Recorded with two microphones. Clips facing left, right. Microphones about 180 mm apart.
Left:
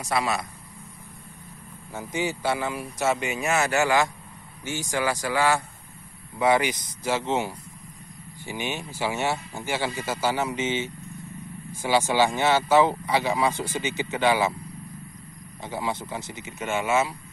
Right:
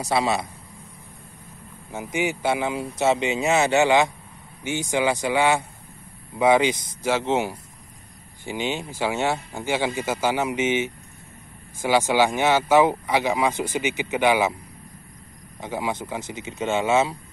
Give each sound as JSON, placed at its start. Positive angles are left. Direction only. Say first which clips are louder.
{"t": 0.0, "sound": "speech", "louder": "right 4 dB", "side_deg": -25}
{"t": 1.9, "sound": "speech", "louder": "right 3 dB", "side_deg": -15}
{"t": 15.6, "sound": "speech", "louder": "right 2 dB", "side_deg": -15}